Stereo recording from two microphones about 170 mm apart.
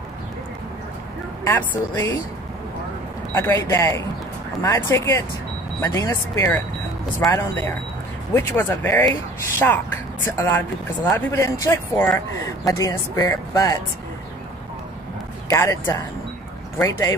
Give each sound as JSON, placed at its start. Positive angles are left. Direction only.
{"t": 1.4, "sound": "speech", "side_deg": 10}
{"t": 3.3, "sound": "speech", "side_deg": 15}
{"t": 15.5, "sound": "speech", "side_deg": 15}